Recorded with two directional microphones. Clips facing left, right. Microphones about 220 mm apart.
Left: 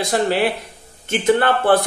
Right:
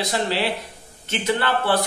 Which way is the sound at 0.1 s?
50° left (ahead or behind).